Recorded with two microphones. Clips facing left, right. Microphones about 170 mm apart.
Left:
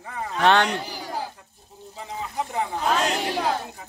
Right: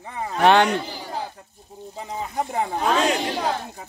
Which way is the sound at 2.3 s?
50° right (ahead or behind).